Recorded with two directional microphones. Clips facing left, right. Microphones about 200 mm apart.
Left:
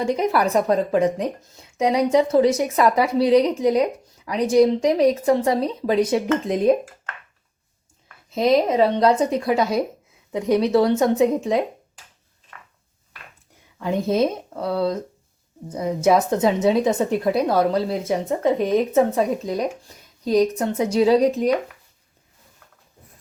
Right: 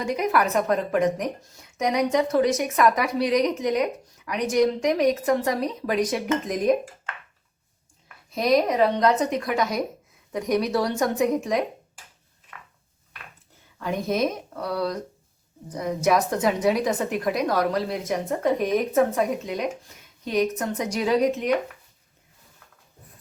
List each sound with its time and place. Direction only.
0.0 s a woman's voice: 30° left (ahead or behind)
8.3 s a woman's voice: 25° left (ahead or behind)
13.7 s a woman's voice: 25° left (ahead or behind)
16.0 s a woman's voice: 25° left (ahead or behind)